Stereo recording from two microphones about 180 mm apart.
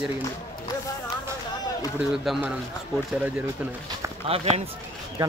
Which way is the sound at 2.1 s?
Centre (ahead or behind).